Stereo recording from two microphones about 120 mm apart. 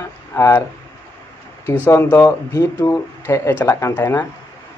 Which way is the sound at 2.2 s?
30° left (ahead or behind).